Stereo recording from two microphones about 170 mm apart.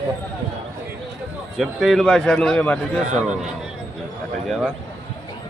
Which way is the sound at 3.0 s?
45° right (ahead or behind).